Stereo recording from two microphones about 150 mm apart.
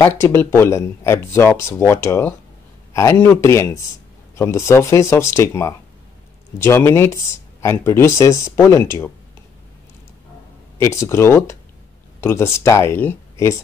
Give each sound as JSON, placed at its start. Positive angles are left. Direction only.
{"t": 0.0, "sound": "speech", "side_deg": 15}
{"t": 10.8, "sound": "speech", "side_deg": 20}